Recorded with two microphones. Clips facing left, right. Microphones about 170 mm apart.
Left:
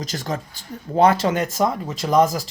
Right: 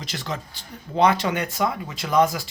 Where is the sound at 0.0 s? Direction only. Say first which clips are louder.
Left 4 dB; 45° left (ahead or behind).